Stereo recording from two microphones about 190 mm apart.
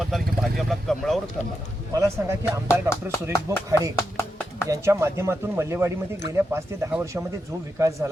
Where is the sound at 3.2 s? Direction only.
15° right (ahead or behind).